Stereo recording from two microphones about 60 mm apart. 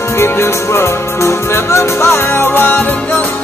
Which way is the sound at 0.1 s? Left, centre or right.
Left.